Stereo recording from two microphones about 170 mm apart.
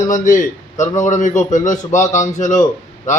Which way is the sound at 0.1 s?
50° left (ahead or behind).